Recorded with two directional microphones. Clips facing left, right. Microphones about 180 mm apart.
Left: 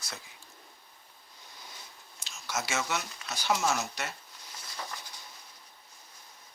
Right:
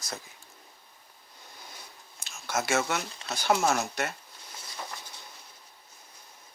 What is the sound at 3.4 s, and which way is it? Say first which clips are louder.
Speech: right 4 dB; 50° right (ahead or behind).